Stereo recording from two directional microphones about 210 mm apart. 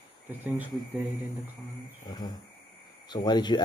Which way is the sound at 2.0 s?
20° left (ahead or behind).